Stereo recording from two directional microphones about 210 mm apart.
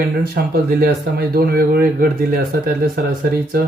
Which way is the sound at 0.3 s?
45° right (ahead or behind).